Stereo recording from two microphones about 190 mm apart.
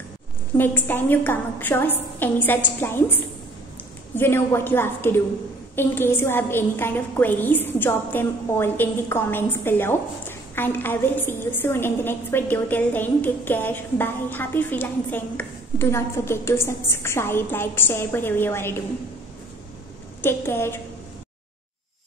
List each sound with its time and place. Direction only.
0.6 s a woman's voice: 10° left (ahead or behind)
20.2 s a woman's voice: 10° left (ahead or behind)